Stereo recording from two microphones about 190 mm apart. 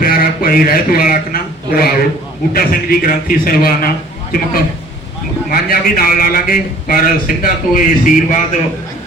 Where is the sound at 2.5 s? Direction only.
50° left (ahead or behind).